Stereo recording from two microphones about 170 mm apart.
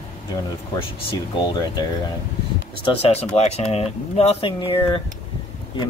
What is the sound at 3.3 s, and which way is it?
Speech, 40° left (ahead or behind).